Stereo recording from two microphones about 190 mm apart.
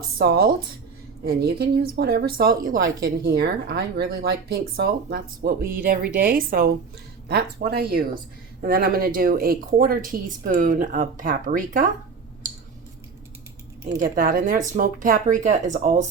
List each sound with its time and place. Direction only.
0.2 s speech: 55° right (ahead or behind)
14.0 s speech: 45° right (ahead or behind)